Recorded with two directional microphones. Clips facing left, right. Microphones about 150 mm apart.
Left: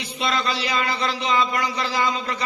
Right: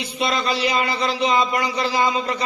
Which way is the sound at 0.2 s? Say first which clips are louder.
Right 3 dB; 15° right (ahead or behind).